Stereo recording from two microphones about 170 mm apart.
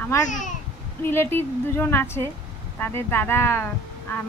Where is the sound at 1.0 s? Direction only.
15° left (ahead or behind).